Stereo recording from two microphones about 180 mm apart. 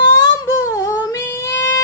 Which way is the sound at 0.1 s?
15° left (ahead or behind).